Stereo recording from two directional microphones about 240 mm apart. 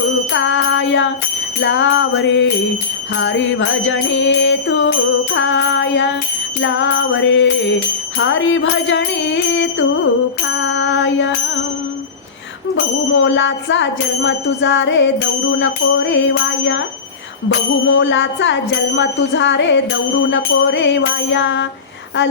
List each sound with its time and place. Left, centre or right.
0.3 s music: left
12.7 s music: left
17.8 s music: left